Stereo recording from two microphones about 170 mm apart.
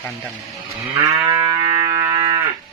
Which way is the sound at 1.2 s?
20° right (ahead or behind).